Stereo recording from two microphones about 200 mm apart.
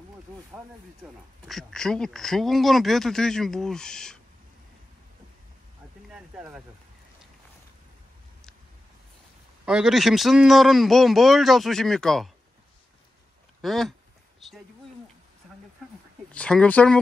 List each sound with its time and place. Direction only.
1.4 s speech: 5° left (ahead or behind)
6.0 s speech: centre (ahead or behind)
9.7 s speech: 5° right (ahead or behind)
13.6 s speech: centre (ahead or behind)
16.3 s speech: 5° left (ahead or behind)